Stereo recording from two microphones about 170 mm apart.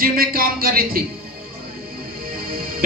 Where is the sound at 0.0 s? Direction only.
60° right (ahead or behind).